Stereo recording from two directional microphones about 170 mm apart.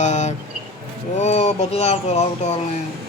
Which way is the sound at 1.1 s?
40° left (ahead or behind).